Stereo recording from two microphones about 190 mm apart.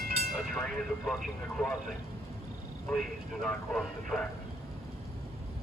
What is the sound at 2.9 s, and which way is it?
A man's voice, 5° left (ahead or behind).